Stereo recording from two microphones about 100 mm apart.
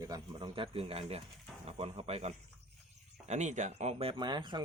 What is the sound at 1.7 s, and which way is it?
Speech, 90° right.